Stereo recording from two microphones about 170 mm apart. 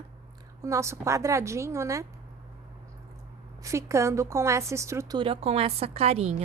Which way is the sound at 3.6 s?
15° right (ahead or behind).